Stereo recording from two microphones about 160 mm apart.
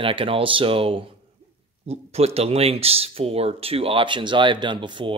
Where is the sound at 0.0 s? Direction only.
35° right (ahead or behind).